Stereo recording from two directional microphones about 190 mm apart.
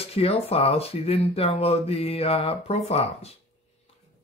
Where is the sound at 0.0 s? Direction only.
30° left (ahead or behind).